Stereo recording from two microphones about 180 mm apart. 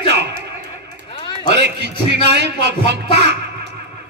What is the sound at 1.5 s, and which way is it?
A man's voice, 65° right (ahead or behind).